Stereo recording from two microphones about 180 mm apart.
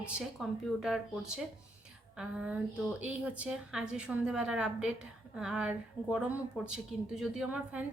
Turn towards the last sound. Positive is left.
turn(degrees=-5)  # may be behind; listen again after turning